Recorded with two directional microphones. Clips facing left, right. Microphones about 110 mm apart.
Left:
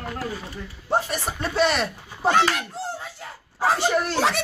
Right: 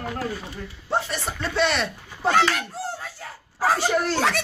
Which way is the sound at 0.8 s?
15° left (ahead or behind).